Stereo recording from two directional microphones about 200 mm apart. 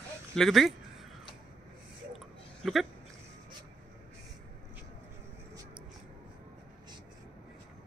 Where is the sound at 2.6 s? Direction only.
Centre (ahead or behind).